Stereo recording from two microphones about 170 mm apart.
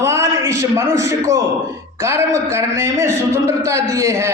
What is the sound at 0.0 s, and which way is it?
A man's voice, 15° right (ahead or behind).